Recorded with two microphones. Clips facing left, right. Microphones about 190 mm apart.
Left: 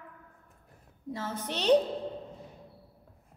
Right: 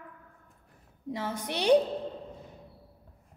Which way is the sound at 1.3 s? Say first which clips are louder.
Right 1 dB; 10° right (ahead or behind).